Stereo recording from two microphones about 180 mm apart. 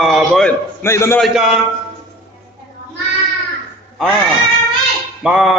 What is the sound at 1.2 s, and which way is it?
Speech, centre (ahead or behind).